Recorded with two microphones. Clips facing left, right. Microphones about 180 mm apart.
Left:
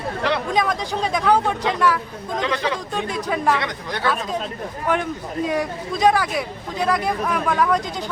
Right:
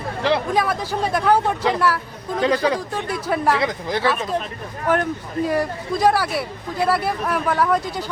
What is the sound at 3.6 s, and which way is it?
Speech, 25° right (ahead or behind).